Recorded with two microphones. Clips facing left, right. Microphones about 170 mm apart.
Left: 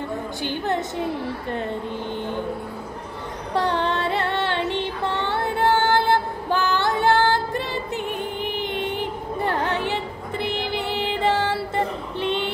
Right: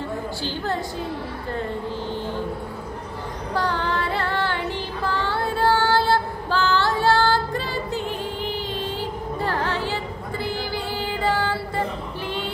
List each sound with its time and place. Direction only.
0.4 s a woman's voice: 20° left (ahead or behind)
3.5 s music: 25° left (ahead or behind)
5.0 s child singing: 20° left (ahead or behind)